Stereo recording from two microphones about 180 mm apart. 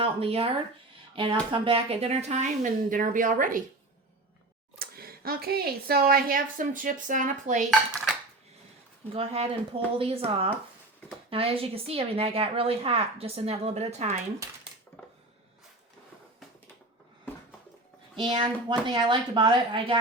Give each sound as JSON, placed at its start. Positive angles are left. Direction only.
{"t": 0.0, "sound": "a woman's voice", "side_deg": -30}
{"t": 4.8, "sound": "speech", "side_deg": -55}
{"t": 9.1, "sound": "a woman's voice", "side_deg": -30}
{"t": 18.2, "sound": "a woman's voice", "side_deg": -25}